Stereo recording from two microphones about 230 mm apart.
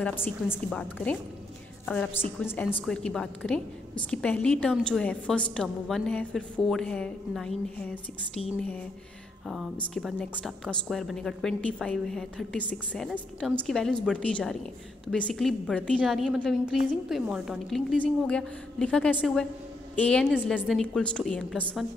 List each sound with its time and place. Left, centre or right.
0.0 s a woman's voice: centre